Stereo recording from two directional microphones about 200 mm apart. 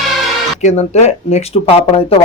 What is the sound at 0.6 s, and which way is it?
Speech, 35° left (ahead or behind).